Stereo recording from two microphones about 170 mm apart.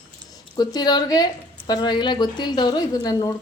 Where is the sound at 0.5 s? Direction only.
25° left (ahead or behind).